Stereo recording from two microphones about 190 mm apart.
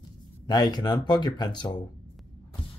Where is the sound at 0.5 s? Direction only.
20° left (ahead or behind).